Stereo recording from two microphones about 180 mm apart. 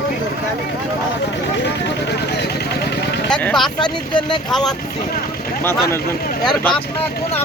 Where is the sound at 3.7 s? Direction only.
25° left (ahead or behind).